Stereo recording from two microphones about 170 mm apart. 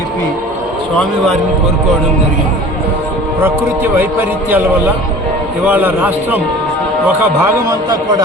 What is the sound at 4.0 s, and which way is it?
A man's voice, 10° right (ahead or behind).